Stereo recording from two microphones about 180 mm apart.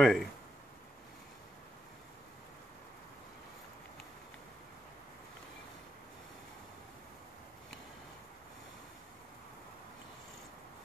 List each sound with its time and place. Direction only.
0.0 s speech: centre (ahead or behind)